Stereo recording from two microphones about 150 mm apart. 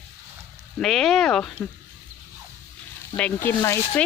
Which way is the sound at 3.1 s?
10° left (ahead or behind).